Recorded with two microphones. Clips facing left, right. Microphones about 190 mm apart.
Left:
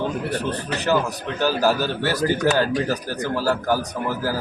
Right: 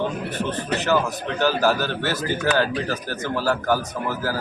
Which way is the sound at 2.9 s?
15° left (ahead or behind).